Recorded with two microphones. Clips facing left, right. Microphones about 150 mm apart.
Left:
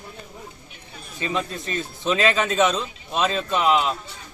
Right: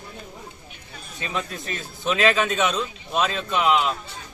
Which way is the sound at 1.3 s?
Centre (ahead or behind).